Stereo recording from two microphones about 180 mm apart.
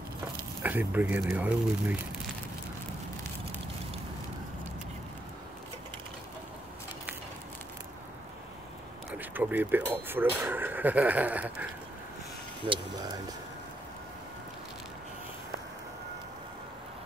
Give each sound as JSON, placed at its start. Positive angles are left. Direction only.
{"t": 0.6, "sound": "speech", "side_deg": -10}
{"t": 9.1, "sound": "a sound", "side_deg": -10}
{"t": 10.0, "sound": "speech", "side_deg": -10}
{"t": 12.6, "sound": "speech", "side_deg": -25}